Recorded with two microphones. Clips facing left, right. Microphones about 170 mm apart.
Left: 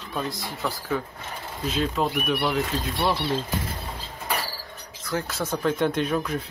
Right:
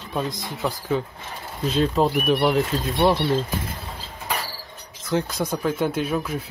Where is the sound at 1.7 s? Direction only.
35° right (ahead or behind).